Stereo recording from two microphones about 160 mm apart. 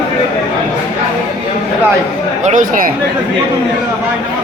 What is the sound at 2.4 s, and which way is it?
Speech, 55° right (ahead or behind).